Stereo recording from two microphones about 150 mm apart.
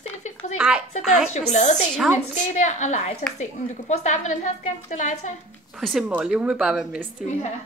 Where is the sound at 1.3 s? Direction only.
50° left (ahead or behind).